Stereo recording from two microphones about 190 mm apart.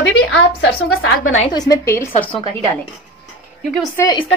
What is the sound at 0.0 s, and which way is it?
A woman's voice, 85° left.